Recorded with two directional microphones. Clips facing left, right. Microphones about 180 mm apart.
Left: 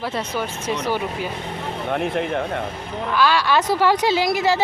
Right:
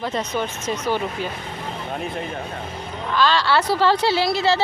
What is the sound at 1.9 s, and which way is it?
Speech, 65° left (ahead or behind).